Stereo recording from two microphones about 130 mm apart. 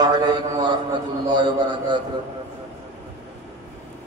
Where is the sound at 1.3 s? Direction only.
35° right (ahead or behind).